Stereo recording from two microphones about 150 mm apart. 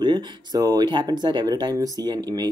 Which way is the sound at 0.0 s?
30° right (ahead or behind).